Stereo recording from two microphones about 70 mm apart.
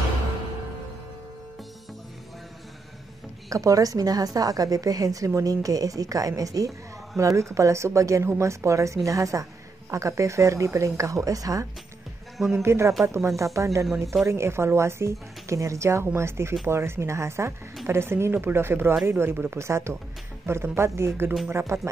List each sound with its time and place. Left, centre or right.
3.4 s a woman's voice: right
12.5 s a woman's voice: right